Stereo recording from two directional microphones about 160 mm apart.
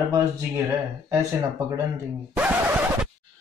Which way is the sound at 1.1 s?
20° right (ahead or behind).